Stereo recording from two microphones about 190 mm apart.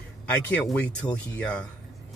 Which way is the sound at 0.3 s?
5° left (ahead or behind).